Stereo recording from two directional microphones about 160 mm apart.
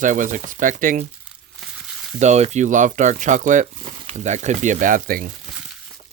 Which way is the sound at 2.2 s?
45° right (ahead or behind).